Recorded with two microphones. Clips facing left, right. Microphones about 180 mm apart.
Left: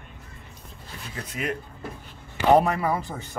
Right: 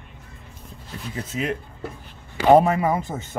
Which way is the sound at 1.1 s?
25° right (ahead or behind).